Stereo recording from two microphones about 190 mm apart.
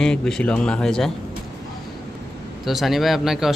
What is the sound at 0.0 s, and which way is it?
A man's voice, 5° left (ahead or behind).